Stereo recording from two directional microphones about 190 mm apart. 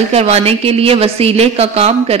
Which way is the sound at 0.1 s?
35° right (ahead or behind).